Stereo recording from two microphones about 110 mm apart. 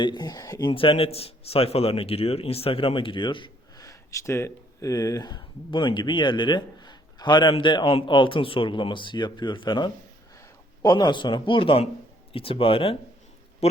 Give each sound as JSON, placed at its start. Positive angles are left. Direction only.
{"t": 0.0, "sound": "speech", "side_deg": 40}
{"t": 0.7, "sound": "a man's voice", "side_deg": 55}
{"t": 3.8, "sound": "speech", "side_deg": 30}
{"t": 10.3, "sound": "a sound", "side_deg": 30}
{"t": 10.9, "sound": "a man's voice", "side_deg": 45}